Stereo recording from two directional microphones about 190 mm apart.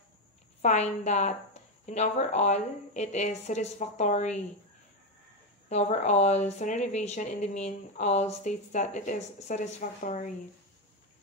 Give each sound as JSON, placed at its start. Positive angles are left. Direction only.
{"t": 0.6, "sound": "speech", "side_deg": 35}
{"t": 5.7, "sound": "speech", "side_deg": 35}